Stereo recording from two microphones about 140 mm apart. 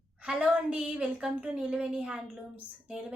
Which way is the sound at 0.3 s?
5° right (ahead or behind).